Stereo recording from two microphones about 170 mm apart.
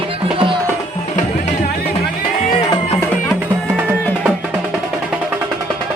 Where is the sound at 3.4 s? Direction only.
10° right (ahead or behind).